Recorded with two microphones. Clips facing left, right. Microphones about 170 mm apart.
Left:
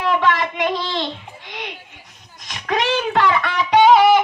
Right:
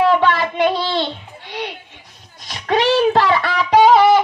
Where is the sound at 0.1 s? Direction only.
30° right (ahead or behind).